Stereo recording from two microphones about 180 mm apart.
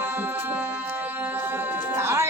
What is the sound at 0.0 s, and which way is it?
Music, 10° right (ahead or behind).